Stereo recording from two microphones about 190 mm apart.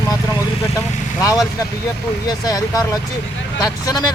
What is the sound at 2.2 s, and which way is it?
Speech, 20° left (ahead or behind).